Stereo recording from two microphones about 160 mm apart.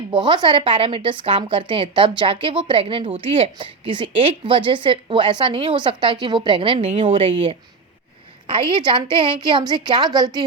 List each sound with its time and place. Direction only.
0.1 s a woman's voice: 30° right (ahead or behind)